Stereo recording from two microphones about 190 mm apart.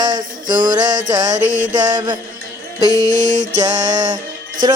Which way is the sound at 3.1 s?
40° right (ahead or behind).